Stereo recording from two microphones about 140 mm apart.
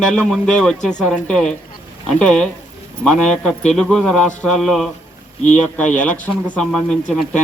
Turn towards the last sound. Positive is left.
turn(degrees=5)  # may be behind; listen again after turning